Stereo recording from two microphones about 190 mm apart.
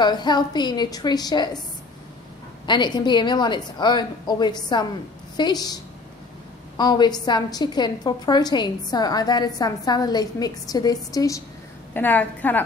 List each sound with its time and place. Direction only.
0.0 s a woman's voice: 20° left (ahead or behind)
2.6 s a woman's voice: 25° left (ahead or behind)
6.8 s a woman's voice: 20° left (ahead or behind)